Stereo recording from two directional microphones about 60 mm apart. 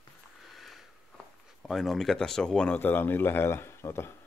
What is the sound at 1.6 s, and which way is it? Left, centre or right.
Speech, centre.